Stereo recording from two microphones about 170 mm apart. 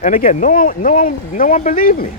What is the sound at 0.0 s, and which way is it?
Speech, 55° left (ahead or behind).